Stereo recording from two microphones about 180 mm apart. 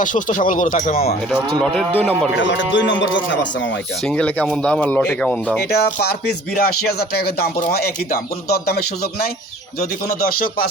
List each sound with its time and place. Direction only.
0.0 s speech: 45° left (ahead or behind)
1.7 s speech: 10° left (ahead or behind)
2.3 s speech: 90° left
4.0 s speech: 5° left (ahead or behind)
5.7 s speech: 60° left (ahead or behind)